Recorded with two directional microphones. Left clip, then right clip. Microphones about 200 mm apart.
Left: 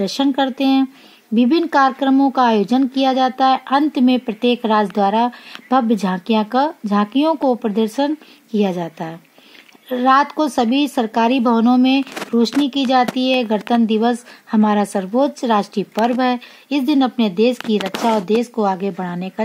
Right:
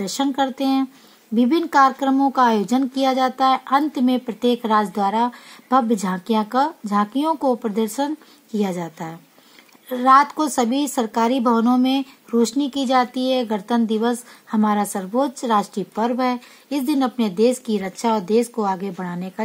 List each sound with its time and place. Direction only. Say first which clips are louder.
0.0 s speech: left 4 dB; 40° left (ahead or behind)